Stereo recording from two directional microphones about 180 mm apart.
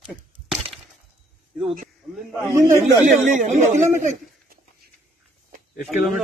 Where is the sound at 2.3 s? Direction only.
15° right (ahead or behind).